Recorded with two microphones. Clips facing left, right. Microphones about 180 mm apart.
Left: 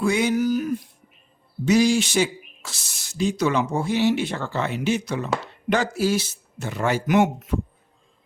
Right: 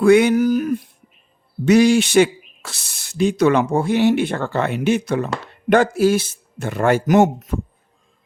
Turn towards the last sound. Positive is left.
turn(degrees=-45)  # may be behind; listen again after turning